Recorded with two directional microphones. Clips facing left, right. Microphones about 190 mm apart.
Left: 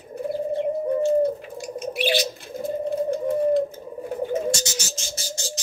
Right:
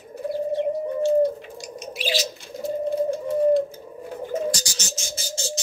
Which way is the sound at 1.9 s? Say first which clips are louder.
Left 3 dB; 60° left (ahead or behind).